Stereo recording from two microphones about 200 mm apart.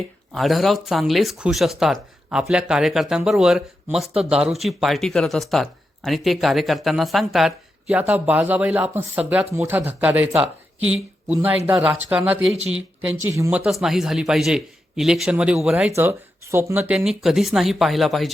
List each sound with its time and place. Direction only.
0.3 s speech: centre (ahead or behind)
11.4 s speech: 5° right (ahead or behind)
13.8 s speech: centre (ahead or behind)